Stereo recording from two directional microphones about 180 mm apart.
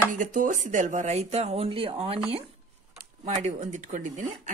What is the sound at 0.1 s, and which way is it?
Speech, 45° right (ahead or behind).